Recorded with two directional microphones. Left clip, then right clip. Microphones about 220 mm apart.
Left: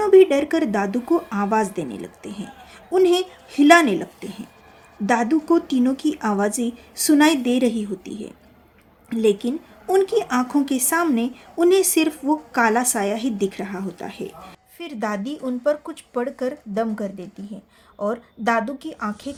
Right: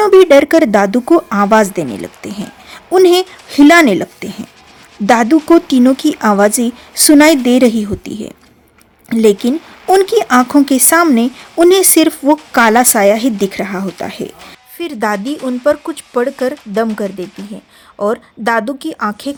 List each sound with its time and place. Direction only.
0.0 s speech: 40° right (ahead or behind)